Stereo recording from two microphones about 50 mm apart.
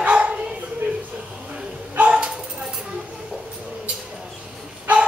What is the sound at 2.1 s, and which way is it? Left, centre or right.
Bow-wow, centre.